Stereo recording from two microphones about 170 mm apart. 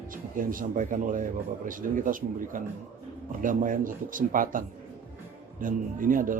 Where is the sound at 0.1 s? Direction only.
55° right (ahead or behind).